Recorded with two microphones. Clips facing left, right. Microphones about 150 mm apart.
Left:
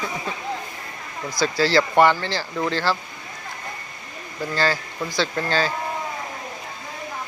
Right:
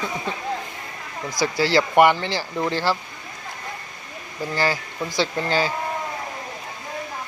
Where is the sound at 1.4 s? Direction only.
15° right (ahead or behind).